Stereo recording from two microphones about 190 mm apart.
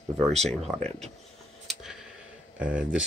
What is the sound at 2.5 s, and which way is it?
Speech, 5° right (ahead or behind).